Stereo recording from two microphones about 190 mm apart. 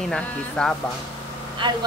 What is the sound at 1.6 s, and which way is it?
Speech, 25° right (ahead or behind).